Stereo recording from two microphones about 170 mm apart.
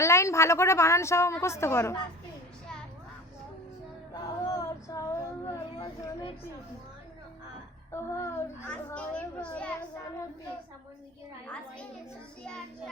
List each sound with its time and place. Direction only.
0.0 s a woman's voice: 15° left (ahead or behind)
4.1 s child singing: 20° left (ahead or behind)
7.9 s a woman's voice: 15° left (ahead or behind)